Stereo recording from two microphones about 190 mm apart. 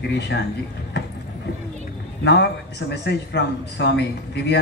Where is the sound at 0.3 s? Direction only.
70° left (ahead or behind).